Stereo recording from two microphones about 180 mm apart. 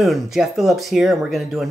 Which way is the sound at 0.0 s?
Centre (ahead or behind).